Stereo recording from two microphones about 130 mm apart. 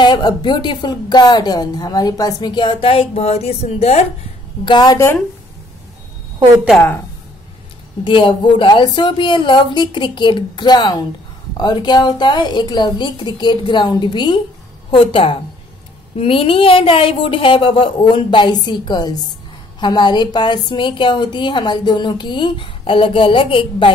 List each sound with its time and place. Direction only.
0.0 s a woman's voice: 35° left (ahead or behind); by 4.0 s 50° left (ahead or behind)
4.6 s a woman's voice: 35° left (ahead or behind)
4.9 s speech: 20° left (ahead or behind)
8.0 s a woman's voice: 40° left (ahead or behind)